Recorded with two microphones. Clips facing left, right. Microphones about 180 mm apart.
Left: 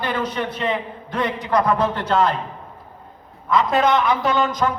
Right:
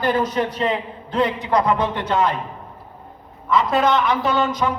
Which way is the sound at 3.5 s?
Centre (ahead or behind).